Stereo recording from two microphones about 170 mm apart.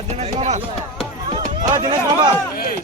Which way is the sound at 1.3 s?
25° right (ahead or behind).